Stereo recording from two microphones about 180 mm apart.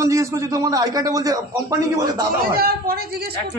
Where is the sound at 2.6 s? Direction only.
55° right (ahead or behind).